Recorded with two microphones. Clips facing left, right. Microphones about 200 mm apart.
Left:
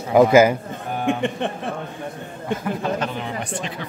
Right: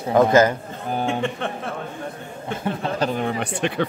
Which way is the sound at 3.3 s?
65° right (ahead or behind).